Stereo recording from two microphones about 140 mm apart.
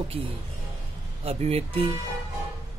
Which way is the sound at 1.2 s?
45° right (ahead or behind).